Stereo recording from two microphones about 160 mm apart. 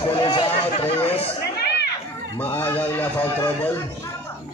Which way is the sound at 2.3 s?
10° left (ahead or behind).